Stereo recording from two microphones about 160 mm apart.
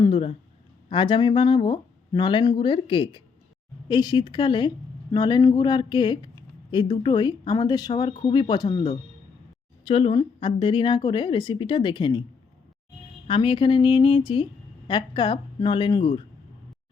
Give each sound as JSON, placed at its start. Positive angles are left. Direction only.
{"t": 0.0, "sound": "a sound", "side_deg": 35}
{"t": 0.9, "sound": "a woman's voice", "side_deg": 30}
{"t": 13.2, "sound": "a woman's voice", "side_deg": 35}